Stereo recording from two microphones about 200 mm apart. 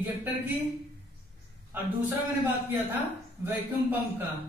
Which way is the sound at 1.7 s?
10° right (ahead or behind).